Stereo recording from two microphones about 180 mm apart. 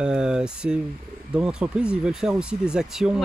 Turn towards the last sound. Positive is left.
turn(degrees=-5)  # may be behind; listen again after turning